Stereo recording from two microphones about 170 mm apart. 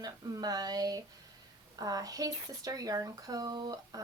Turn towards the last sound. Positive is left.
turn(degrees=-25)  # may be behind; listen again after turning